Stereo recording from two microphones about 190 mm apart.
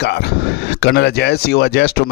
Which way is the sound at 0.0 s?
60° left (ahead or behind).